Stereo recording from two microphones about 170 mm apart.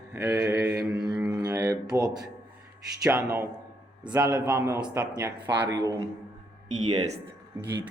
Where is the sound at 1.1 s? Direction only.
5° right (ahead or behind).